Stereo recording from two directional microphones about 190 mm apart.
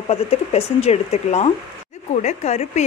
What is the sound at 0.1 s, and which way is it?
Speech, 35° left (ahead or behind).